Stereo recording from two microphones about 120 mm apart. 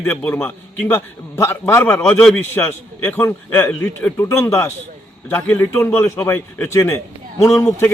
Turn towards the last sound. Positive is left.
turn(degrees=25)  # may be behind; listen again after turning